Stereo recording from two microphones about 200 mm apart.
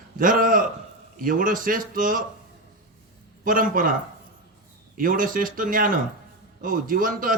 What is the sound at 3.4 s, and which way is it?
Speech, 45° right (ahead or behind).